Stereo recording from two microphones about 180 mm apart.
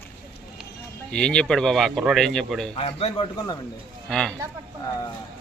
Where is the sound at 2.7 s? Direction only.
30° left (ahead or behind).